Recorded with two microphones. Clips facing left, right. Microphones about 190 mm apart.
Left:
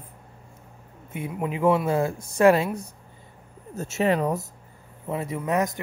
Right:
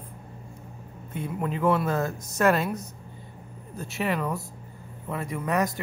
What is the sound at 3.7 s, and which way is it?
Speech, 45° left (ahead or behind).